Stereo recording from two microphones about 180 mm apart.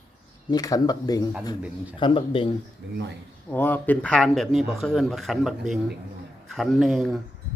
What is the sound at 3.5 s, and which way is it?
Speech, 10° left (ahead or behind).